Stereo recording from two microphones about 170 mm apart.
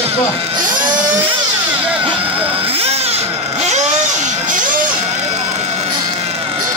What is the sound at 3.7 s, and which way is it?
Vehicle, 45° right (ahead or behind).